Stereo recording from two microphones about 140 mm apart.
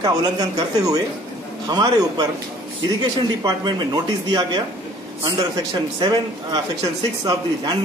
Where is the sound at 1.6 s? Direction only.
30° right (ahead or behind).